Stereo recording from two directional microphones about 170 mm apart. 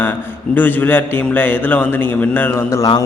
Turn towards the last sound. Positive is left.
turn(degrees=20)  # may be behind; listen again after turning